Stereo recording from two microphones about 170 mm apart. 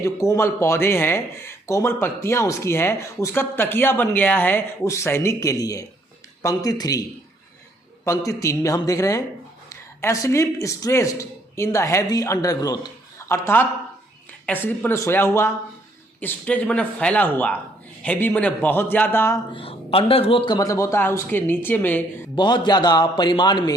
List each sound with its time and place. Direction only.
0.0 s a man's voice: 20° left (ahead or behind)
8.0 s a man's voice: 20° left (ahead or behind)
19.5 s speech: 35° left (ahead or behind); by 22.0 s 10° left (ahead or behind)
22.4 s a man's voice: 25° left (ahead or behind)